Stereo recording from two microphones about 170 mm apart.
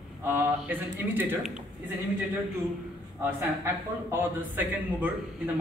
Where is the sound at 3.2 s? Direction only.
15° right (ahead or behind).